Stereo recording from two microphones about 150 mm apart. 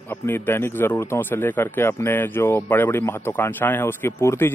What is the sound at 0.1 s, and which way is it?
Speech, 15° left (ahead or behind).